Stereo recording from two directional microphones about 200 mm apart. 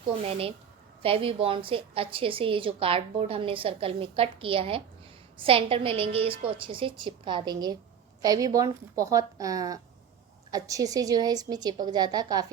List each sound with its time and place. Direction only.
0.3 s a woman's voice: 30° right (ahead or behind)